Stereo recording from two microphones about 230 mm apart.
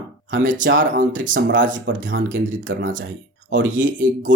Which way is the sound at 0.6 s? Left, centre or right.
Right.